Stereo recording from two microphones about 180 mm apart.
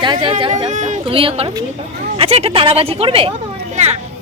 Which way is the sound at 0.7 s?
40° right (ahead or behind).